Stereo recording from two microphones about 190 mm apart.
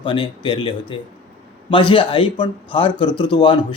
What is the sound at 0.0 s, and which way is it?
A man's voice, 25° left (ahead or behind).